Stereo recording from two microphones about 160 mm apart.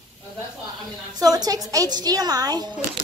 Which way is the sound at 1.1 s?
25° right (ahead or behind).